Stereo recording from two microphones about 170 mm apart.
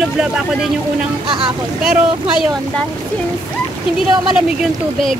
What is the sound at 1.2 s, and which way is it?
Speech, 30° right (ahead or behind).